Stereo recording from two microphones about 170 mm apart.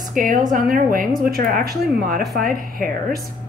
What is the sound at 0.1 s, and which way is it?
Speech, 50° right (ahead or behind).